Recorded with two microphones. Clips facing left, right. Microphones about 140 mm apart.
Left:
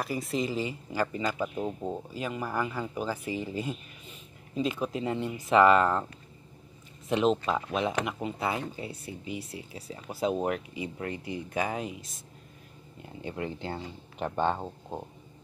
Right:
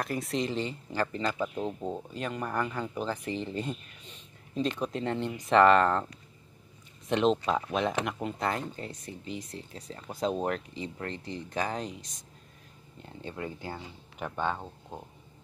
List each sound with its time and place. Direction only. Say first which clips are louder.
0.0 s speech: even; centre (ahead or behind)
7.1 s speech: even; 5° left (ahead or behind)
13.0 s speech: left 3 dB; 15° left (ahead or behind)